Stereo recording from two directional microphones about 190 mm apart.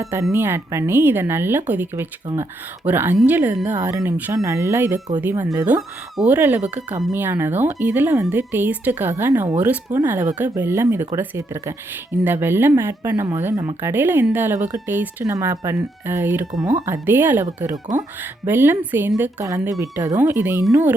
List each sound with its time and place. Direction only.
0.0 s speech: 15° right (ahead or behind)